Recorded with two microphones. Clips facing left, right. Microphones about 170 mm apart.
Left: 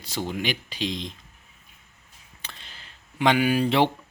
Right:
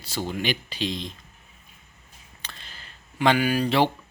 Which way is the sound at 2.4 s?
20° left (ahead or behind).